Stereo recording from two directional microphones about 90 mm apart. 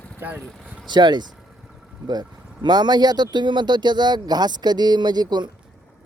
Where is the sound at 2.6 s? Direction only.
50° right (ahead or behind).